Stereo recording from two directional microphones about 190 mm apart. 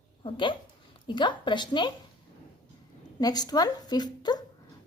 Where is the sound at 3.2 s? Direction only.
20° left (ahead or behind).